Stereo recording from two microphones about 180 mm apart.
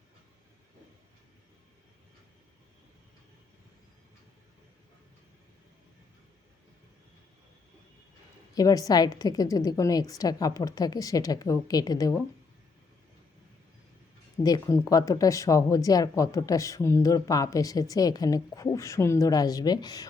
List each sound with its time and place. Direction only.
8.5 s speech: 20° left (ahead or behind)
14.4 s speech: 20° left (ahead or behind)